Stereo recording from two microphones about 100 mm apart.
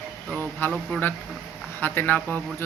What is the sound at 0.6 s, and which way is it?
A man's voice, 15° left (ahead or behind).